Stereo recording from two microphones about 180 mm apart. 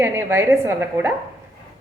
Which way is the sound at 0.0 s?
15° right (ahead or behind).